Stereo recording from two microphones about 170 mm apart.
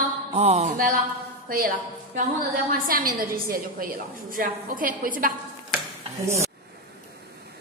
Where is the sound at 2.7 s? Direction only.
55° right (ahead or behind).